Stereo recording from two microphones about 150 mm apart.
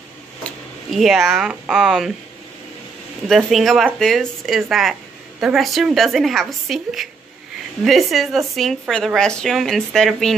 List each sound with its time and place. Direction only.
0.9 s speech: centre (ahead or behind)
3.3 s speech: centre (ahead or behind)